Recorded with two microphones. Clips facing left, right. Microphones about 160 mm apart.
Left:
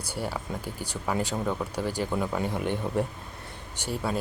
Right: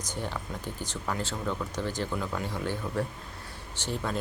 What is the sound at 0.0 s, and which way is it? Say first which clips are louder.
Speech: left 2 dB; 10° left (ahead or behind).